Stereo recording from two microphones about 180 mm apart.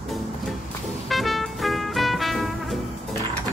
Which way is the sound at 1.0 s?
Centre (ahead or behind).